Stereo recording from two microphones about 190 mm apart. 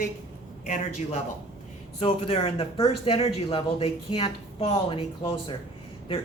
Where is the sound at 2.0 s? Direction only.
30° left (ahead or behind).